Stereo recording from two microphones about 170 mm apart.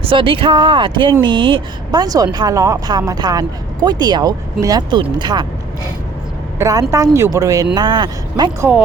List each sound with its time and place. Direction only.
0.0 s speech: 30° right (ahead or behind)
6.6 s speech: 20° right (ahead or behind)